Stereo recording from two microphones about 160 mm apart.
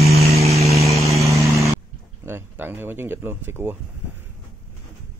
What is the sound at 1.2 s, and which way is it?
Vehicle, 20° right (ahead or behind).